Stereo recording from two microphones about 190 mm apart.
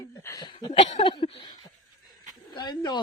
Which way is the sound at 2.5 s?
20° left (ahead or behind).